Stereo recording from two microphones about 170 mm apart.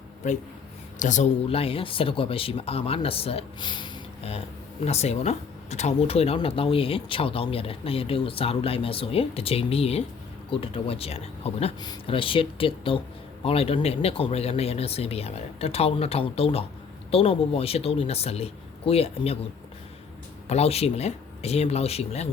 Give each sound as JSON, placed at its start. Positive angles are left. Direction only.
{"t": 0.9, "sound": "speech", "side_deg": 45}
{"t": 20.5, "sound": "speech", "side_deg": 40}